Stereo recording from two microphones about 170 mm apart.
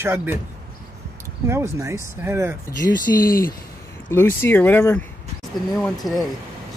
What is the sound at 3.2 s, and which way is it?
Speech, 55° left (ahead or behind).